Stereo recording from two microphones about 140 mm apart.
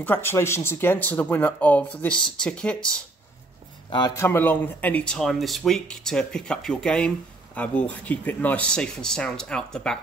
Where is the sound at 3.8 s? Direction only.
30° left (ahead or behind).